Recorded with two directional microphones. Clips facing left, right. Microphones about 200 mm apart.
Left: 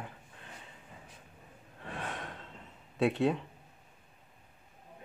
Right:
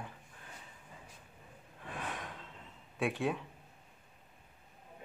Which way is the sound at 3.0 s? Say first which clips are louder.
Left 5 dB; 20° left (ahead or behind).